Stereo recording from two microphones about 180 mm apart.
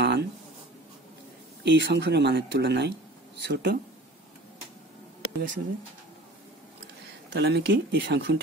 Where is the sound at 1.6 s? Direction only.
75° right (ahead or behind).